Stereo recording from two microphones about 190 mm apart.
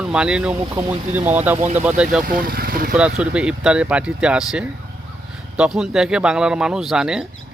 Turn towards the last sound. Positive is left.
turn(degrees=-5)  # may be behind; listen again after turning